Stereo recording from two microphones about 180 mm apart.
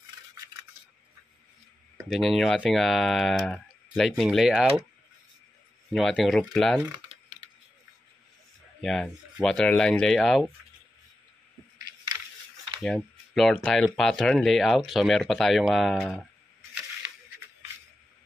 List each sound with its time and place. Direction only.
2.0 s speech: centre (ahead or behind)
5.9 s speech: centre (ahead or behind)
8.8 s speech: centre (ahead or behind)
12.8 s speech: centre (ahead or behind)